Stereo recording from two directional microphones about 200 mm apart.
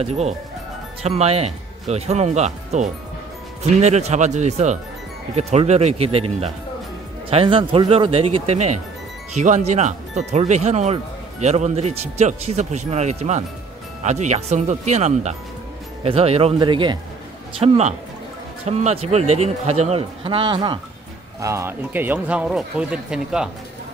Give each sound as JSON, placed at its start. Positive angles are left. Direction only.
{"t": 0.0, "sound": "speech", "side_deg": -30}
{"t": 17.6, "sound": "speech", "side_deg": -35}